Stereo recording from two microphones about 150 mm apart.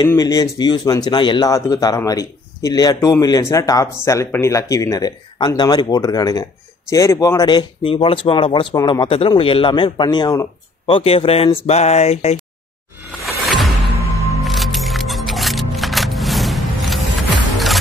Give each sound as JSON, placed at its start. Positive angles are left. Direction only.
{"t": 0.0, "sound": "speech", "side_deg": 25}
{"t": 13.2, "sound": "music", "side_deg": 0}
{"t": 14.1, "sound": "music", "side_deg": 20}
{"t": 14.4, "sound": "music", "side_deg": 0}